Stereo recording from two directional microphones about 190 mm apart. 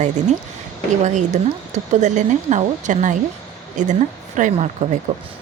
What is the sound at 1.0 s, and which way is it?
Speech, 40° right (ahead or behind).